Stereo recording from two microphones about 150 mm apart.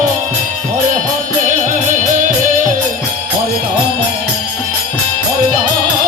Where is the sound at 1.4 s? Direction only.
55° right (ahead or behind).